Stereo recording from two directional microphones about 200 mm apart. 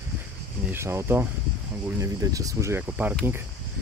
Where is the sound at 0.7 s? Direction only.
15° right (ahead or behind).